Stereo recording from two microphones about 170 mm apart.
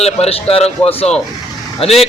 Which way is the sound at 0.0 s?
35° left (ahead or behind).